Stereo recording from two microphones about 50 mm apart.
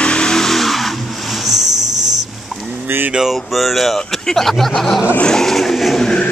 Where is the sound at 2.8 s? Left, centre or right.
Right.